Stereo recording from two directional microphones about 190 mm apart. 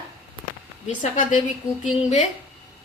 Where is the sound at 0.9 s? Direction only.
45° left (ahead or behind).